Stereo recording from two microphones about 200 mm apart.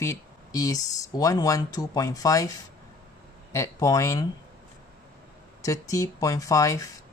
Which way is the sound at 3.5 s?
15° left (ahead or behind).